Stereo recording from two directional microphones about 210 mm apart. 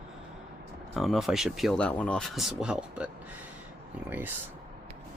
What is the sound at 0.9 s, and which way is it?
Speech, centre (ahead or behind).